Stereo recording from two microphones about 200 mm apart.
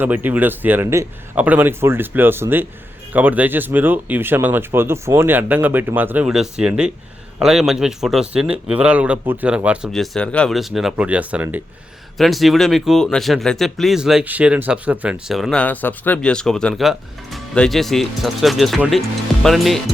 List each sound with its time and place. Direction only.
0.0 s speech: 10° right (ahead or behind)